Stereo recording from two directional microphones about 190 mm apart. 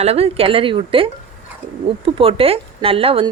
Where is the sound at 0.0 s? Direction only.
30° right (ahead or behind).